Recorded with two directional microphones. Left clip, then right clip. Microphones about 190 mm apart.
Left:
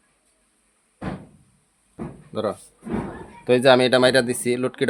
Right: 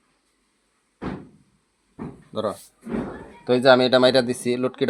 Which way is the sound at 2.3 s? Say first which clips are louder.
Left 1 dB; 15° left (ahead or behind).